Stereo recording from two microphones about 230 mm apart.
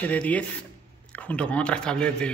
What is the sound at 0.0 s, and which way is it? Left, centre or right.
Speech, centre.